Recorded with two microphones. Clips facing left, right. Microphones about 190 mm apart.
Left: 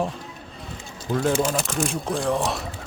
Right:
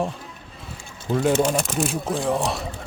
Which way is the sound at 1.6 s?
Centre (ahead or behind).